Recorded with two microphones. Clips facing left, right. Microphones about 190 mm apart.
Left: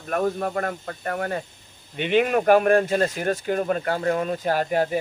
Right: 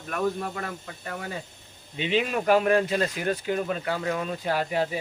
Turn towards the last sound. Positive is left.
turn(degrees=45)  # may be behind; listen again after turning